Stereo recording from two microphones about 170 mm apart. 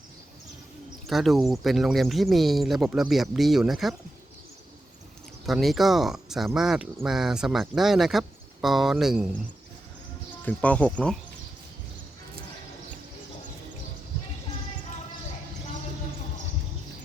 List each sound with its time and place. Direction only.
1.0 s speech: centre (ahead or behind)
5.5 s speech: centre (ahead or behind)
10.4 s speech: 10° left (ahead or behind)